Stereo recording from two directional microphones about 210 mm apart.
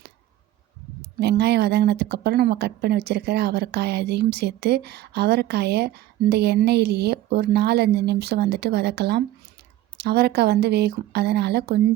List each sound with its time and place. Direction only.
1.2 s speech: 50° right (ahead or behind)